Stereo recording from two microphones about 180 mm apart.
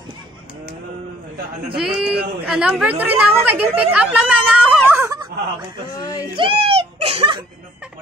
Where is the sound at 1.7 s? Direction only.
5° right (ahead or behind).